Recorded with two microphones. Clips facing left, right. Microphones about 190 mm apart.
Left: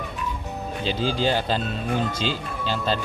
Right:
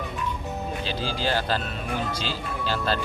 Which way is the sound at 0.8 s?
20° left (ahead or behind).